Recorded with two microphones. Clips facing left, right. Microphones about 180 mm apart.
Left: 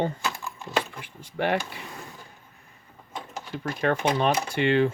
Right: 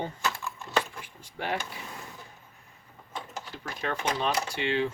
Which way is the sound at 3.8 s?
60° left (ahead or behind).